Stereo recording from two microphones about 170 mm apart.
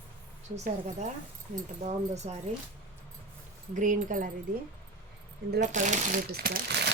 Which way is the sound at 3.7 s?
45° right (ahead or behind).